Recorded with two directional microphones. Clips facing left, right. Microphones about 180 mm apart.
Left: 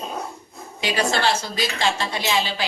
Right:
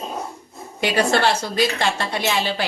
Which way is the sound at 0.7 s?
55° right (ahead or behind).